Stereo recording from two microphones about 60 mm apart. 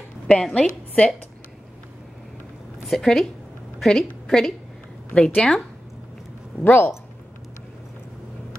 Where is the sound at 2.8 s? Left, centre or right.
Centre.